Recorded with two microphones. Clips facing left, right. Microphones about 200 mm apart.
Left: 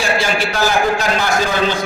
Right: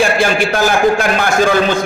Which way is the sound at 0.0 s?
50° right (ahead or behind).